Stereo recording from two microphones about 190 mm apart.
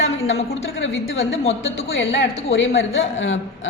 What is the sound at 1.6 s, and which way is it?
A woman's voice, 80° left.